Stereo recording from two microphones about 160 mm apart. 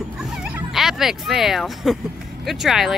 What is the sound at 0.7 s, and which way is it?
Speech, centre (ahead or behind).